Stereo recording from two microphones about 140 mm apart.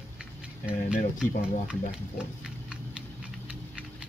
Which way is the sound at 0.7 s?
10° right (ahead or behind).